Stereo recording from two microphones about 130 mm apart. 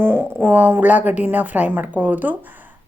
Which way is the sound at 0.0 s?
15° right (ahead or behind).